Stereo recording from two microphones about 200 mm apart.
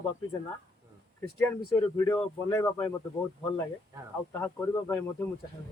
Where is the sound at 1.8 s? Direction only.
10° left (ahead or behind).